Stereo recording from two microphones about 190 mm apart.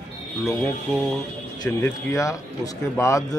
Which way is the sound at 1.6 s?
15° left (ahead or behind).